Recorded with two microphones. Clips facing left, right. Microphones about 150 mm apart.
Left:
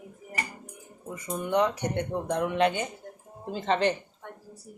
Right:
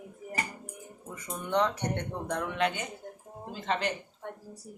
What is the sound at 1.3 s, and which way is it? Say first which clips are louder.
Speech: left 3 dB; 10° left (ahead or behind).